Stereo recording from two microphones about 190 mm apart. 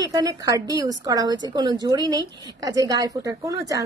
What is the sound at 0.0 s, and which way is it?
A woman's voice, 20° right (ahead or behind).